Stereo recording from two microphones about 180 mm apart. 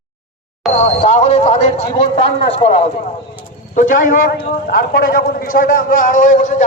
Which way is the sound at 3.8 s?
50° left (ahead or behind).